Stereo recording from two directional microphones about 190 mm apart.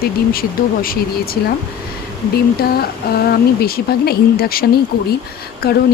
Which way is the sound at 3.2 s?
55° left (ahead or behind).